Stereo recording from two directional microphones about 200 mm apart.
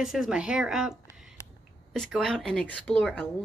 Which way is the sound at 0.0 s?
Centre (ahead or behind).